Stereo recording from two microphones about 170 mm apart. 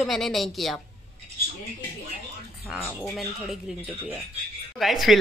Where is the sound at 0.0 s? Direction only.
Centre (ahead or behind).